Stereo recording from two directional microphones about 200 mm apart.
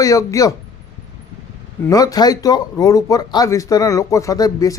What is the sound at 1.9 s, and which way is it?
Speech, 20° left (ahead or behind).